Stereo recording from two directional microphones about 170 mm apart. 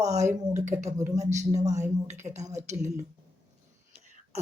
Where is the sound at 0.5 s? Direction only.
45° right (ahead or behind).